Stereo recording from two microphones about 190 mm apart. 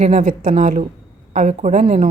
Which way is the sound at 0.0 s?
40° right (ahead or behind).